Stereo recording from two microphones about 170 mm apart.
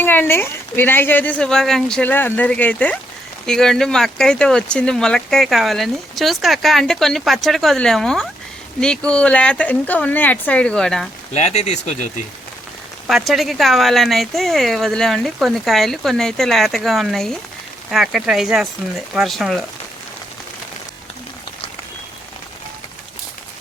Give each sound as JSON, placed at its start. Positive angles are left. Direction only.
{"t": 0.0, "sound": "speech", "side_deg": 10}
{"t": 11.3, "sound": "speech", "side_deg": 40}
{"t": 13.1, "sound": "speech", "side_deg": 0}